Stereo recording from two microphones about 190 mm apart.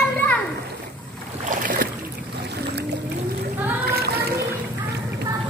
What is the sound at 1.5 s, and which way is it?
Boat, 45° right (ahead or behind).